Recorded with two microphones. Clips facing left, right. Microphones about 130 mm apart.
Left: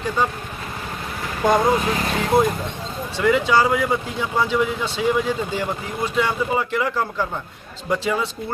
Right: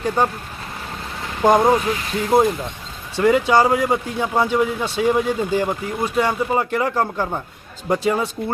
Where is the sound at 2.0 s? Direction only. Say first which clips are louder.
Left 1 dB; 75° left (ahead or behind).